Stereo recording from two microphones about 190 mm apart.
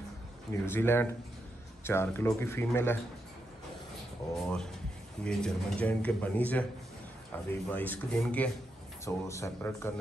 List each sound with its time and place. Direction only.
0.7 s speech: 10° left (ahead or behind)
4.4 s speech: 5° left (ahead or behind)